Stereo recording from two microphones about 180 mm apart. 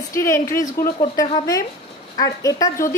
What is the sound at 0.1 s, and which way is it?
A woman's voice, 15° left (ahead or behind).